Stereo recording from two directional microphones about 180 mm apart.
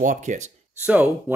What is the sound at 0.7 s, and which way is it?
Speech, 10° right (ahead or behind).